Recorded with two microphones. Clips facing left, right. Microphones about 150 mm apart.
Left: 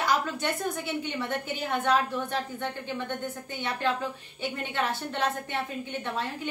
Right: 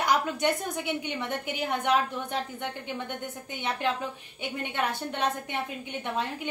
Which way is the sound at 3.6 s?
20° right (ahead or behind).